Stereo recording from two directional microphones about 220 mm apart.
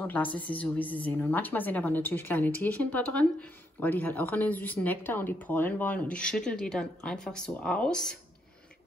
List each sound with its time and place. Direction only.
0.0 s speech: 5° left (ahead or behind)